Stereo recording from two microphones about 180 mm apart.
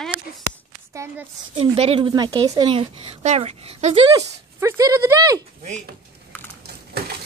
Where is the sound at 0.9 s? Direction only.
15° right (ahead or behind).